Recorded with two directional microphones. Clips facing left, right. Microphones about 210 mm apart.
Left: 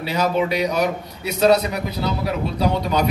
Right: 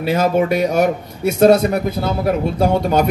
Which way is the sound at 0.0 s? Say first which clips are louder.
Right 5 dB; 50° right (ahead or behind).